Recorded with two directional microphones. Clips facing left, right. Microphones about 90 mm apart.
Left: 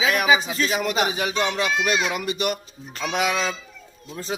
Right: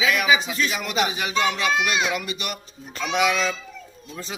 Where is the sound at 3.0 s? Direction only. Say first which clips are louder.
Right 2 dB; 40° left (ahead or behind).